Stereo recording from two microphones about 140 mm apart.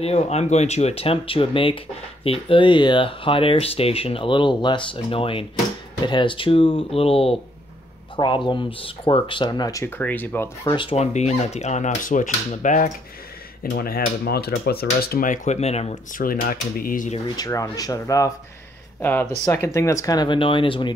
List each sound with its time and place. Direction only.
0.0 s speech: 45° left (ahead or behind)
8.5 s speech: 35° left (ahead or behind); by 10.5 s 10° left (ahead or behind)
10.7 s speech: 35° left (ahead or behind)
11.0 s speech: 50° left (ahead or behind)
13.6 s speech: 90° left; by 16.0 s 50° left (ahead or behind)
16.1 s speech: 90° left
17.4 s speech: 25° left (ahead or behind)